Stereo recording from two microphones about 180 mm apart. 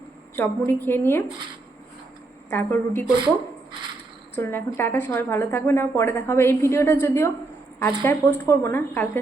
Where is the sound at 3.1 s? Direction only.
25° right (ahead or behind).